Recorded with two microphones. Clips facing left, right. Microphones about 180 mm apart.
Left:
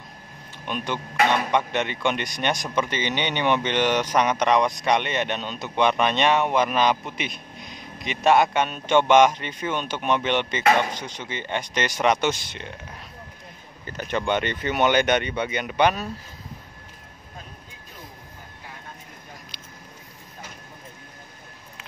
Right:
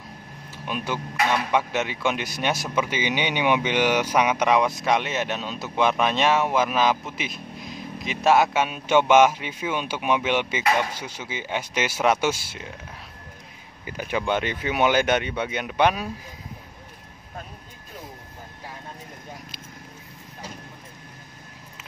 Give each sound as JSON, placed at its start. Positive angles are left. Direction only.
{"t": 0.7, "sound": "speech", "side_deg": -5}
{"t": 13.8, "sound": "speech", "side_deg": -5}